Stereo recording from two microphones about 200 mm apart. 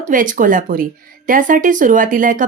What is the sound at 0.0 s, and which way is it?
A woman's voice, 40° right (ahead or behind).